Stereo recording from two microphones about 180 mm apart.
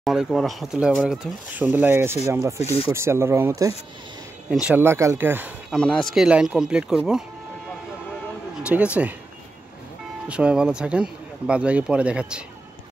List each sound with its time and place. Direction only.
0.0 s speech: centre (ahead or behind)
2.6 s speech: 35° left (ahead or behind)
2.9 s speech: 15° right (ahead or behind)
5.8 s speech: 5° left (ahead or behind)
8.6 s speech: 5° right (ahead or behind)
10.2 s speech: 5° right (ahead or behind)